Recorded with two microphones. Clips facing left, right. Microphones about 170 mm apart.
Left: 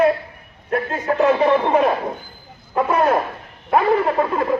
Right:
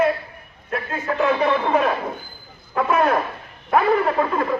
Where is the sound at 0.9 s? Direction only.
35° left (ahead or behind).